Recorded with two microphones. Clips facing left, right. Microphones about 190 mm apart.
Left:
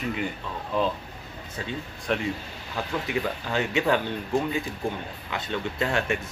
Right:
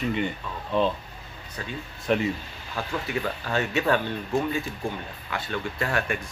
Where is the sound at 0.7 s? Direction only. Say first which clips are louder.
Right 2 dB; centre (ahead or behind).